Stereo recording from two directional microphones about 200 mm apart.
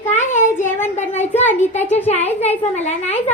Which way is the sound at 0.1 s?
35° left (ahead or behind).